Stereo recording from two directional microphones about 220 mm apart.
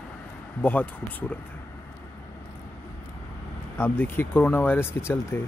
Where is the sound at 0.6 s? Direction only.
10° left (ahead or behind).